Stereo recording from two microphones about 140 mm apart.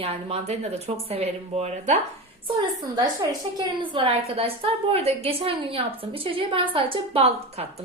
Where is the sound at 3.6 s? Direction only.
35° right (ahead or behind).